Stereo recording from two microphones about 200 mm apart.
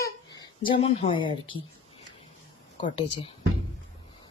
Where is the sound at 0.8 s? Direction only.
30° left (ahead or behind).